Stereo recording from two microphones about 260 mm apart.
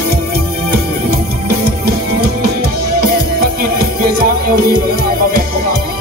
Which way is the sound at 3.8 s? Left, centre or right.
Right.